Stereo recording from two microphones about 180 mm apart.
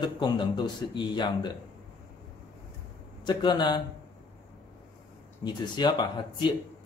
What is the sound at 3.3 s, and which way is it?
Speech, 25° left (ahead or behind).